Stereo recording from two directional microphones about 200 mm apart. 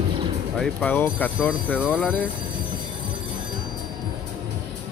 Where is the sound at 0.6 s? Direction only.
10° left (ahead or behind).